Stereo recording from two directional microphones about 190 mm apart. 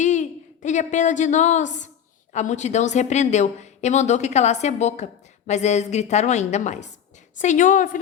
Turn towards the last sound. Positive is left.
turn(degrees=45)  # may be behind; listen again after turning